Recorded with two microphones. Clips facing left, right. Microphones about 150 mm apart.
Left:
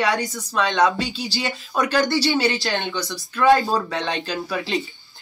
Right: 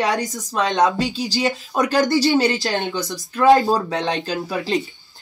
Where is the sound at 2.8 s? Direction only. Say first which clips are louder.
Right 3 dB; 40° right (ahead or behind).